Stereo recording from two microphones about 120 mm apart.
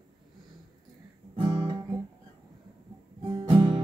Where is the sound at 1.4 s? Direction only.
45° right (ahead or behind).